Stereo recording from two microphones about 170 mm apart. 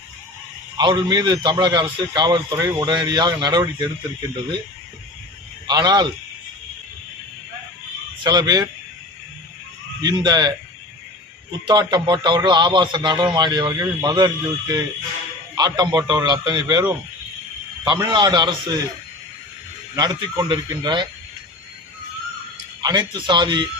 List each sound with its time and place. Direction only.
0.8 s speech: 25° right (ahead or behind)
5.6 s speech: 25° right (ahead or behind)
8.2 s speech: 25° right (ahead or behind)
10.0 s speech: 25° right (ahead or behind)
11.7 s speech: 25° right (ahead or behind)
20.3 s speech: 25° right (ahead or behind)
22.8 s speech: 25° right (ahead or behind)